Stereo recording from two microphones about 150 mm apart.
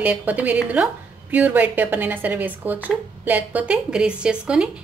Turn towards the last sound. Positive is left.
turn(degrees=-5)  # may be behind; listen again after turning